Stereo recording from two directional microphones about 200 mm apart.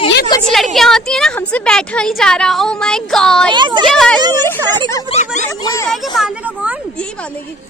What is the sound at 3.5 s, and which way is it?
Speech, 25° right (ahead or behind).